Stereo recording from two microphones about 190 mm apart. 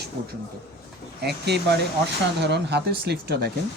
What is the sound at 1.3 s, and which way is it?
Speech, 60° right (ahead or behind).